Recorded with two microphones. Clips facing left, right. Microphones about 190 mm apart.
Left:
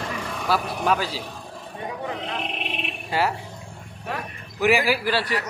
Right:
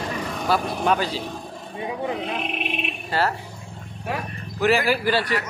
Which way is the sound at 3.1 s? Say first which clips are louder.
Even; 10° left (ahead or behind).